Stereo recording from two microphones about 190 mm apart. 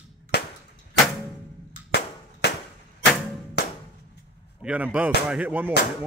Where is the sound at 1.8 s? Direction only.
60° left (ahead or behind).